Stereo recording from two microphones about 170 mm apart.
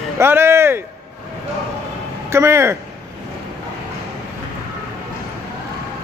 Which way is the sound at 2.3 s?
15° right (ahead or behind).